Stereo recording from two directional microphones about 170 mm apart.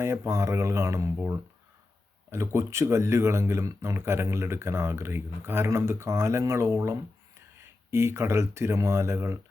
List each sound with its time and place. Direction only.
0.0 s speech: 15° right (ahead or behind)